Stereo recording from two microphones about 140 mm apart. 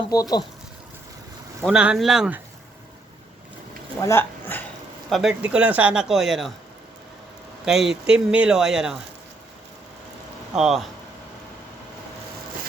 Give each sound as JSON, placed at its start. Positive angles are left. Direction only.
{"t": 0.1, "sound": "speech", "side_deg": 25}
{"t": 1.6, "sound": "speech", "side_deg": -5}
{"t": 4.0, "sound": "a sound", "side_deg": 15}
{"t": 5.0, "sound": "speech", "side_deg": 0}
{"t": 7.6, "sound": "speech", "side_deg": -5}
{"t": 10.5, "sound": "speech", "side_deg": -5}